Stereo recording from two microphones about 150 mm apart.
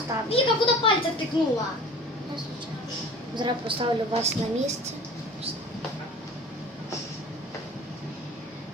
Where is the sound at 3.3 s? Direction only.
35° right (ahead or behind).